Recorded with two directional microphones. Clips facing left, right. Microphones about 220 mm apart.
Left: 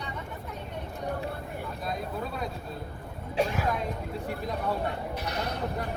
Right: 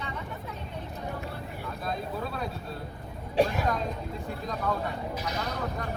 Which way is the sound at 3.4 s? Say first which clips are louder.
Right 3 dB; 40° right (ahead or behind).